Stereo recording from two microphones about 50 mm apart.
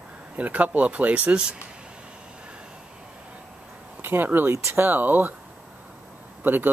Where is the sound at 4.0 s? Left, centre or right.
Right.